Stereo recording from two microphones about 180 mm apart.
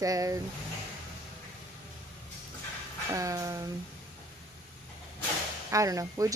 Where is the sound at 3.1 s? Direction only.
20° right (ahead or behind).